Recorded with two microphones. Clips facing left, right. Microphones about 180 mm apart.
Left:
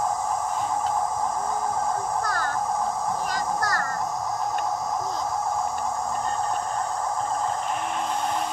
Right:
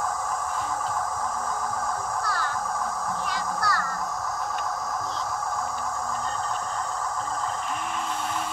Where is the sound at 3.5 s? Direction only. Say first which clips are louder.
Left 2 dB; 45° left (ahead or behind).